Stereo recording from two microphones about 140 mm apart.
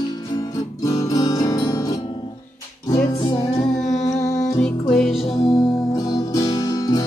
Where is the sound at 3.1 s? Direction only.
35° left (ahead or behind).